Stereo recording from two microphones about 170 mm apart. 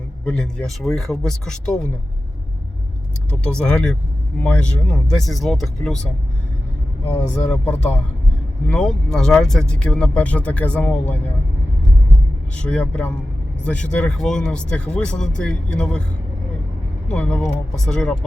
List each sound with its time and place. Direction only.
0.3 s speech: 5° left (ahead or behind)
3.6 s speech: 5° left (ahead or behind)
7.5 s speech: 10° left (ahead or behind)
12.5 s speech: 5° left (ahead or behind)
17.1 s speech: 5° left (ahead or behind)